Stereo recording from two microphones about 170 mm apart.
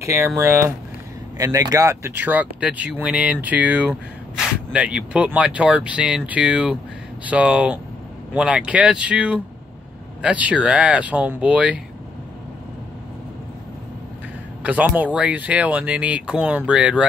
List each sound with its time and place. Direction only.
0.0 s speech: 15° right (ahead or behind)
14.6 s speech: 10° right (ahead or behind)